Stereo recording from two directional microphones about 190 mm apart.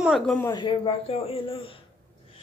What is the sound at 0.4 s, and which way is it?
A woman's voice, 20° left (ahead or behind).